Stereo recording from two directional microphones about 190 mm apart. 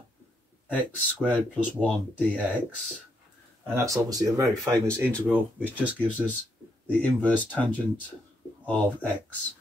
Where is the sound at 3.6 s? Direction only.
15° right (ahead or behind).